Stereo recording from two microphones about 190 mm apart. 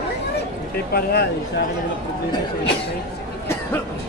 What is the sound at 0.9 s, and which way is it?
Speech, 55° left (ahead or behind).